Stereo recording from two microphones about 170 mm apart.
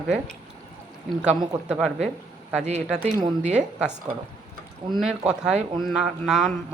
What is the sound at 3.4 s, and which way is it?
Speech, 40° right (ahead or behind).